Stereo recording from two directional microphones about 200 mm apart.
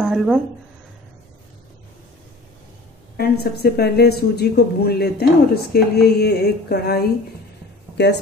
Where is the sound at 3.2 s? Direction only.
50° left (ahead or behind).